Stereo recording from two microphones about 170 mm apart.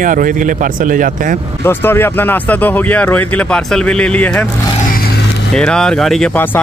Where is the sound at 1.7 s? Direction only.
15° left (ahead or behind).